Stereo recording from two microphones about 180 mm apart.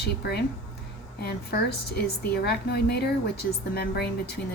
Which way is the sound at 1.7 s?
65° left (ahead or behind).